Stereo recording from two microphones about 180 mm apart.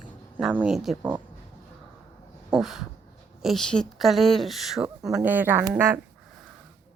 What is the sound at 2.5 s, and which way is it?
Speech, centre (ahead or behind).